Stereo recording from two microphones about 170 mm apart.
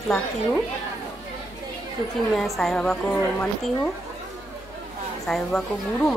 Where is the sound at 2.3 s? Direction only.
Centre (ahead or behind).